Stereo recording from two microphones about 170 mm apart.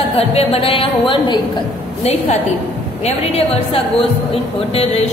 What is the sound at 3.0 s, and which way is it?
Speech, 35° left (ahead or behind).